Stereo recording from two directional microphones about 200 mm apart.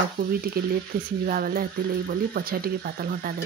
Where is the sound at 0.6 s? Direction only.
50° right (ahead or behind).